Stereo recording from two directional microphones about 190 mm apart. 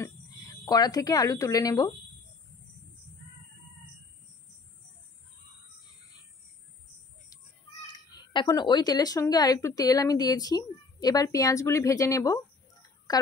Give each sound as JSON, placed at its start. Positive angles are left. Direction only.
{"t": 0.0, "sound": "speech", "side_deg": 20}
{"t": 7.8, "sound": "speech", "side_deg": 20}